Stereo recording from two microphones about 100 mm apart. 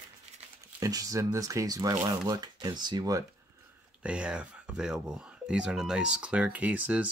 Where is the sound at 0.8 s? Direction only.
35° right (ahead or behind).